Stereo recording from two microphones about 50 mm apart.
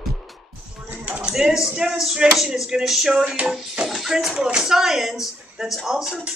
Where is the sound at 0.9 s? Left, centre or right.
Right.